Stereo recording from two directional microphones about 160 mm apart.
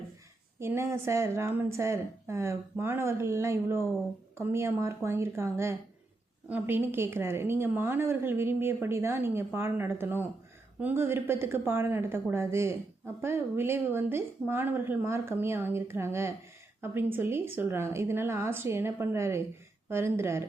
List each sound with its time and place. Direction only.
0.6 s a woman's voice: 15° right (ahead or behind)